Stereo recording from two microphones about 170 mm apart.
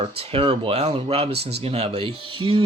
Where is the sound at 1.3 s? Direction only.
75° right (ahead or behind).